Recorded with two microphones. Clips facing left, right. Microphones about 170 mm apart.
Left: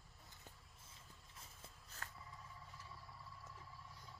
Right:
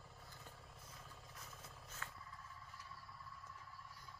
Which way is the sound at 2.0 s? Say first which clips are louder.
Even; 40° left (ahead or behind).